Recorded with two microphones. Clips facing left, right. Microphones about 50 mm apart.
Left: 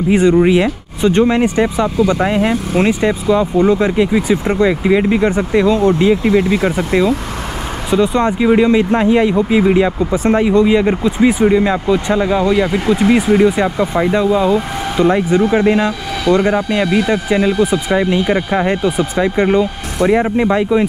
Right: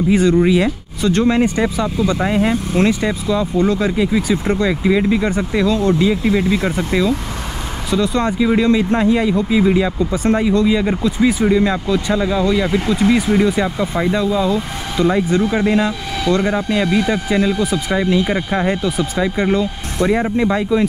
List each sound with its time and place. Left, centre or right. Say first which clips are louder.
0.1 s speech: left 3 dB; left
18.2 s speech: left 3 dB; centre